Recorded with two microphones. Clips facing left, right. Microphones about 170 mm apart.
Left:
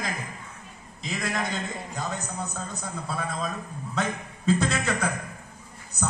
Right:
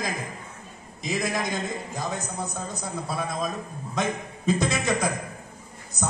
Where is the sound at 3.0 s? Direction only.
15° right (ahead or behind).